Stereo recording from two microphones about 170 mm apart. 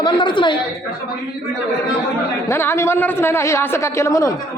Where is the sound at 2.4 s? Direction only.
15° left (ahead or behind).